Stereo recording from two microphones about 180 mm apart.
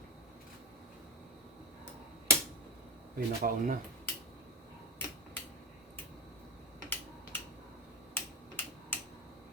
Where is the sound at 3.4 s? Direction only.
50° right (ahead or behind).